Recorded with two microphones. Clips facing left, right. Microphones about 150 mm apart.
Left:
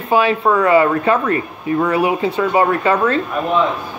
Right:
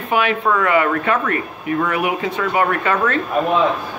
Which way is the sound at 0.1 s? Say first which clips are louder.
Left 3 dB; 30° left (ahead or behind).